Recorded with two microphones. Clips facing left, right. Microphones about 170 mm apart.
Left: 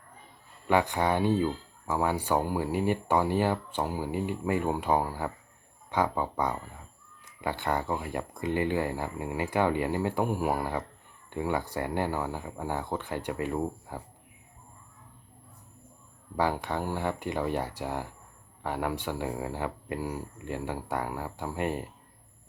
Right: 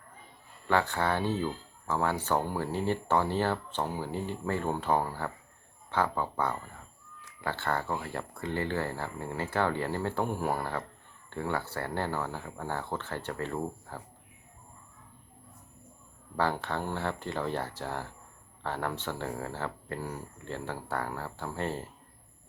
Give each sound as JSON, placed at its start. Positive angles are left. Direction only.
{"t": 0.7, "sound": "speech", "side_deg": 15}
{"t": 16.3, "sound": "speech", "side_deg": 10}